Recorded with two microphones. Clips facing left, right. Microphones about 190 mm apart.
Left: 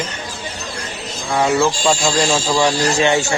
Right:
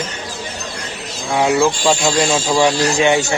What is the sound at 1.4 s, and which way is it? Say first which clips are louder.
A man's voice: right 1 dB; 5° right (ahead or behind).